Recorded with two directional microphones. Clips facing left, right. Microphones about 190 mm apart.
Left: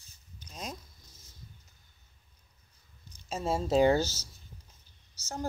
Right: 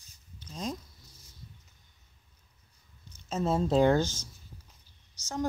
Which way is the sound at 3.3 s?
10° left (ahead or behind).